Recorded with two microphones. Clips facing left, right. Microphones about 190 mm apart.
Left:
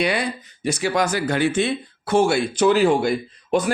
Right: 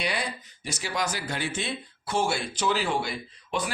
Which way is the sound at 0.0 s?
60° left (ahead or behind).